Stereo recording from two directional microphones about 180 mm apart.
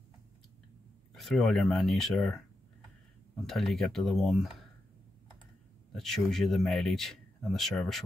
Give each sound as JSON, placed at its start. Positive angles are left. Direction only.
{"t": 1.1, "sound": "speech", "side_deg": 0}
{"t": 3.4, "sound": "speech", "side_deg": 0}
{"t": 5.9, "sound": "speech", "side_deg": 0}